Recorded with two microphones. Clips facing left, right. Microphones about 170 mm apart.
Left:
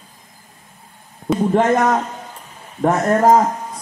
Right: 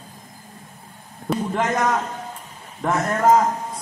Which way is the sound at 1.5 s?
40° left (ahead or behind).